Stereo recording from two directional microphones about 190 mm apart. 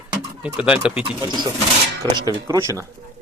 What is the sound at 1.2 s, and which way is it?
Speech, 25° right (ahead or behind).